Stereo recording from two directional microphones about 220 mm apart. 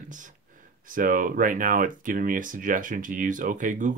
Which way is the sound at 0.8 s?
40° right (ahead or behind).